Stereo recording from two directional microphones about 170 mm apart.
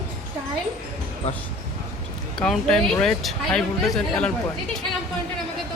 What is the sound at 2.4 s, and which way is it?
Speech, 5° left (ahead or behind).